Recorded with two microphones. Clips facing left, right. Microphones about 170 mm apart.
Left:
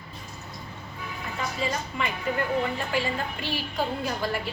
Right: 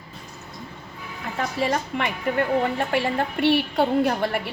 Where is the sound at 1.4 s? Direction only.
60° right (ahead or behind).